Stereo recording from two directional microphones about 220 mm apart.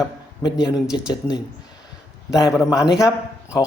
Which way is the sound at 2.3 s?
Centre (ahead or behind).